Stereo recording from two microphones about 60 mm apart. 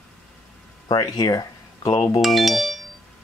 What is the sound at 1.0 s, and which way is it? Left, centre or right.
Speech, left.